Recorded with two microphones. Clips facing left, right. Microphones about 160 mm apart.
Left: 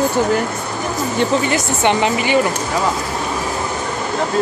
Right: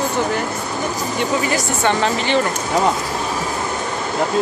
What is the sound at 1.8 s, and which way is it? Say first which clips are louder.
Speech: left 3 dB; 15° left (ahead or behind).